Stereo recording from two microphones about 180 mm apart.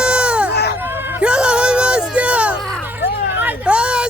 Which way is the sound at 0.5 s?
65° left (ahead or behind).